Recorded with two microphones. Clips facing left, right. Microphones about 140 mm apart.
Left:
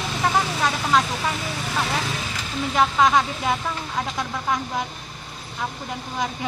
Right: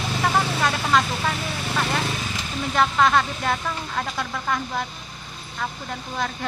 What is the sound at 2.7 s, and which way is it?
Speech, 5° left (ahead or behind).